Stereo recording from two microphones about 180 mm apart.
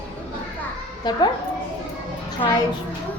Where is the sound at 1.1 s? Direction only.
25° left (ahead or behind).